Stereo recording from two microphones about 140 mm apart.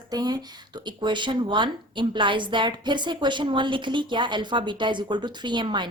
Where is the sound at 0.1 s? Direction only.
30° right (ahead or behind).